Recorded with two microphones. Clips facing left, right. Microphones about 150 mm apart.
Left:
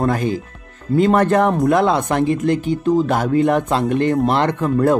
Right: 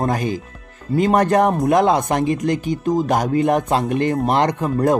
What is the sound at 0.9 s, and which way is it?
Speech, 15° right (ahead or behind).